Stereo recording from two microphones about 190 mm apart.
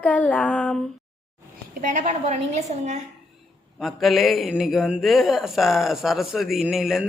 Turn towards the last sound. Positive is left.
turn(degrees=0)  # may be behind; listen again after turning